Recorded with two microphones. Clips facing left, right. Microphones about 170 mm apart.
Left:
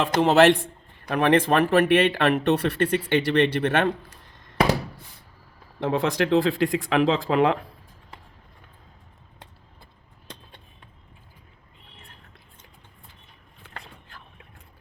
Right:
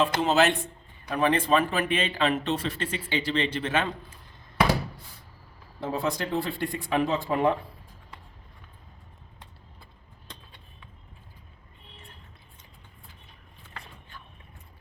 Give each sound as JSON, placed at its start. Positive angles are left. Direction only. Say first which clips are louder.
{"t": 0.2, "sound": "speech", "louder": "left 6 dB", "side_deg": 65}
{"t": 5.8, "sound": "speech", "louder": "left 6 dB", "side_deg": 90}